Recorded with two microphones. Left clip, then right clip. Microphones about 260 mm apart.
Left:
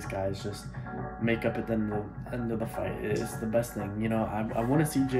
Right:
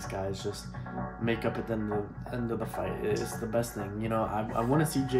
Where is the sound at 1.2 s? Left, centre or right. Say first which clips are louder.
Left 2 dB; centre.